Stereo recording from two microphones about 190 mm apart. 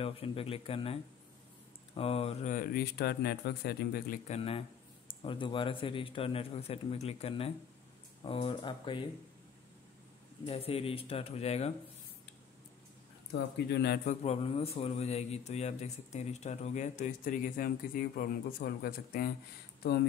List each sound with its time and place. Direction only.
0.0 s speech: 30° left (ahead or behind)
2.0 s speech: 30° left (ahead or behind); by 4.2 s 55° left (ahead or behind)
4.3 s speech: 30° left (ahead or behind)
10.4 s a man's voice: 30° left (ahead or behind)
13.3 s speech: 65° left (ahead or behind)
14.0 s a man's voice: 35° left (ahead or behind); by 19.3 s 50° left (ahead or behind)